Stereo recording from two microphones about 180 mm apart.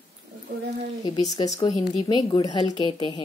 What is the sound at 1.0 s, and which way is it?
A woman's voice, 20° left (ahead or behind).